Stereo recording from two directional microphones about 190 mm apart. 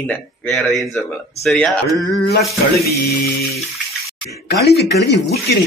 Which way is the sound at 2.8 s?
55° left (ahead or behind).